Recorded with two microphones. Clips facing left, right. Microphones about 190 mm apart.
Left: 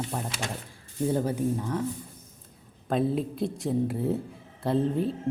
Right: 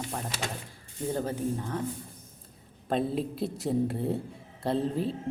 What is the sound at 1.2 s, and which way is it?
Speech, 15° left (ahead or behind).